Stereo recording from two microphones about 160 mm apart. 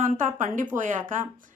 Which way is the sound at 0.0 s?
55° right (ahead or behind).